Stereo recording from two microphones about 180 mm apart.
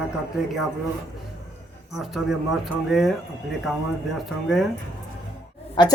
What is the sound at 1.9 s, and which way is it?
Speech, centre (ahead or behind).